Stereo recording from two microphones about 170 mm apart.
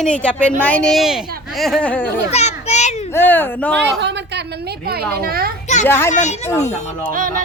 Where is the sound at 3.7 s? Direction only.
85° right; by 5.5 s 60° right (ahead or behind).